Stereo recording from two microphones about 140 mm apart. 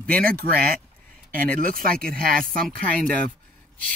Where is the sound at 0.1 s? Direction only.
90° right.